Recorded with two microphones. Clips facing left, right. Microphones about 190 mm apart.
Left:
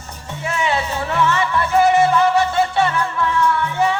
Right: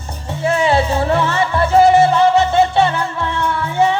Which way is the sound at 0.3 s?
35° right (ahead or behind).